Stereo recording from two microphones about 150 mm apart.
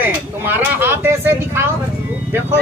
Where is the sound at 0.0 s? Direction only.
15° right (ahead or behind).